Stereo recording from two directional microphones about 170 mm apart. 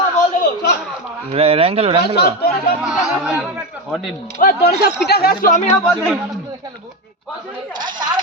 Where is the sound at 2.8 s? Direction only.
5° right (ahead or behind).